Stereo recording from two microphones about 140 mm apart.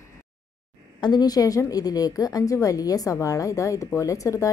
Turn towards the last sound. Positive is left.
turn(degrees=20)  # may be behind; listen again after turning